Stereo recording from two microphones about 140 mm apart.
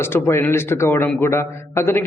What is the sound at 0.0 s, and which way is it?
A man's voice, 15° left (ahead or behind).